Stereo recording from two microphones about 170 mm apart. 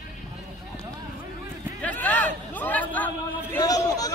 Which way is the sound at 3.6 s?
20° left (ahead or behind).